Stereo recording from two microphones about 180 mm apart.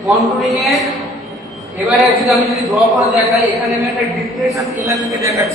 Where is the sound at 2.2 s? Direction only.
Centre (ahead or behind).